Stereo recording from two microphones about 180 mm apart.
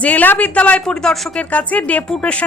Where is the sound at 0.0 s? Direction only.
10° left (ahead or behind).